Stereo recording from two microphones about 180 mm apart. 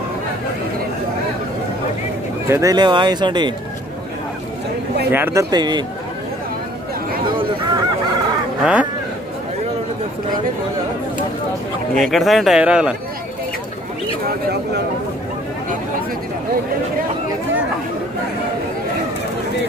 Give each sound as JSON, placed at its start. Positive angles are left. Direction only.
{"t": 2.5, "sound": "speech", "side_deg": -20}
{"t": 5.1, "sound": "speech", "side_deg": -15}
{"t": 7.2, "sound": "a sound", "side_deg": -25}
{"t": 11.9, "sound": "a man's voice", "side_deg": 0}